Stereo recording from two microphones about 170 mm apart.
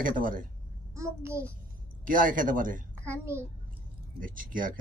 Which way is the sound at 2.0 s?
50° right (ahead or behind).